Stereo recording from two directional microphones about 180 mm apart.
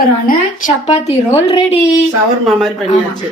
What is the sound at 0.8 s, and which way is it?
Speech, 35° left (ahead or behind).